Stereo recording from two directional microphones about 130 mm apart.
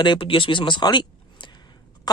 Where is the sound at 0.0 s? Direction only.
40° left (ahead or behind).